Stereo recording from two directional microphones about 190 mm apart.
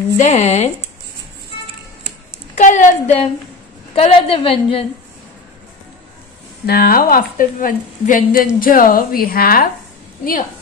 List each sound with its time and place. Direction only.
0.2 s a woman's voice: 35° left (ahead or behind)
2.5 s a woman's voice: 40° left (ahead or behind)
6.6 s a woman's voice: 55° left (ahead or behind)